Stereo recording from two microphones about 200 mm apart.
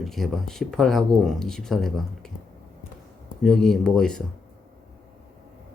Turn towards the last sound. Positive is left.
turn(degrees=5)  # may be behind; listen again after turning